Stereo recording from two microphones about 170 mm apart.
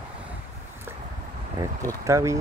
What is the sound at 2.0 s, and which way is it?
Speech, 20° right (ahead or behind).